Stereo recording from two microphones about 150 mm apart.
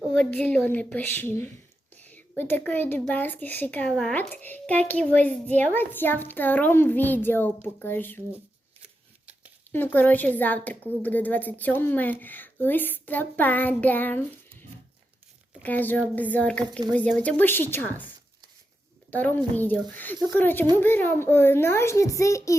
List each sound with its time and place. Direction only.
0.1 s a child's voice: 10° left (ahead or behind)
9.7 s a child's voice: 10° left (ahead or behind)
15.6 s a child's voice: 10° left (ahead or behind)
19.1 s a child's voice: 10° left (ahead or behind)